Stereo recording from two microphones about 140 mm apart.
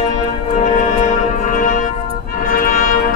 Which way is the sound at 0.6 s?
65° left (ahead or behind).